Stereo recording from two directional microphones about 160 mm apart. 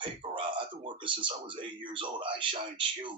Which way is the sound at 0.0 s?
30° right (ahead or behind).